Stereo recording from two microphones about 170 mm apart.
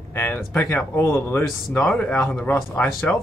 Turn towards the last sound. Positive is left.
turn(degrees=10)  # may be behind; listen again after turning